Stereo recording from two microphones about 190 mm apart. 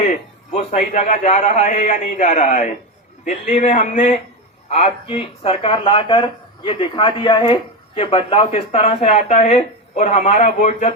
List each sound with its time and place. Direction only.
0.5 s speech: 40° left (ahead or behind)